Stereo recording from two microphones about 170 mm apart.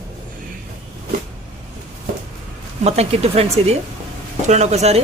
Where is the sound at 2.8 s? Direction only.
40° right (ahead or behind).